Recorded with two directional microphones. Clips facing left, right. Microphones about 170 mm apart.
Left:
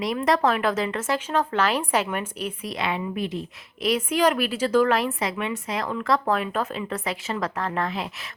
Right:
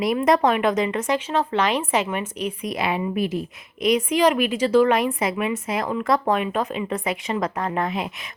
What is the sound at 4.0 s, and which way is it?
A woman's voice, 10° right (ahead or behind).